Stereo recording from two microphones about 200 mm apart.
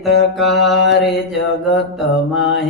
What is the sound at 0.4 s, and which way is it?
Mantra, 60° left (ahead or behind).